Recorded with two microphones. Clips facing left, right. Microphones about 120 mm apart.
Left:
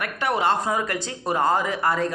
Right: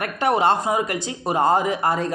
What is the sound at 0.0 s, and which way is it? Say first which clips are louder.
Speech: right 4 dB; 25° right (ahead or behind).